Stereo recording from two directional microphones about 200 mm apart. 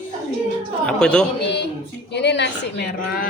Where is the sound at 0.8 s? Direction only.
5° left (ahead or behind).